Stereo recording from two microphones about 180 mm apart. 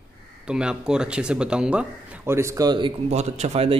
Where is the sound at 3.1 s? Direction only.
40° right (ahead or behind).